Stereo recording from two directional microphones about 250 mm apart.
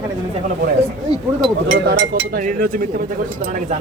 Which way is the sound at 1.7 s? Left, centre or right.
Right.